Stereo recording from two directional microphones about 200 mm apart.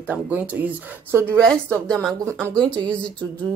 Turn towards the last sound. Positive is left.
turn(degrees=5)  # may be behind; listen again after turning